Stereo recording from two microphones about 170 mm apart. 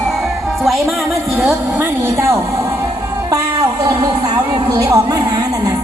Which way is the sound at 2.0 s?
15° right (ahead or behind).